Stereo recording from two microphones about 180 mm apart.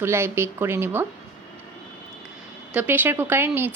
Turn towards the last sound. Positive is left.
turn(degrees=-10)  # may be behind; listen again after turning